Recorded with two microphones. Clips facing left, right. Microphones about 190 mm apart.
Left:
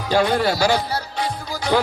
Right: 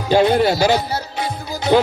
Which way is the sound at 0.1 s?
25° right (ahead or behind).